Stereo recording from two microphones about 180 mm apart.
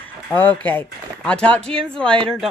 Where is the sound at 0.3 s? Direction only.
10° left (ahead or behind).